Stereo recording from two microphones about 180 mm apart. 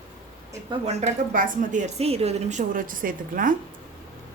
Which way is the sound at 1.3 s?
50° right (ahead or behind).